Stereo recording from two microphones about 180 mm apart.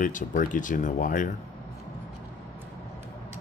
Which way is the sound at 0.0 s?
45° left (ahead or behind).